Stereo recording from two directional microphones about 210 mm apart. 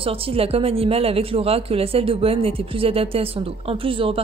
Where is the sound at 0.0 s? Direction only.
25° right (ahead or behind).